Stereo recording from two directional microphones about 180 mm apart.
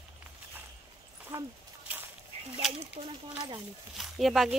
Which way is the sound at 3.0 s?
40° right (ahead or behind).